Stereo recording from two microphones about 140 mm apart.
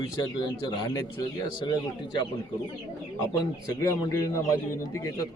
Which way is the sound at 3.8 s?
25° left (ahead or behind).